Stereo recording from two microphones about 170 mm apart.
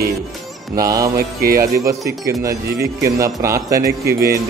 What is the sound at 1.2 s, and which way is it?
Music, 60° right (ahead or behind).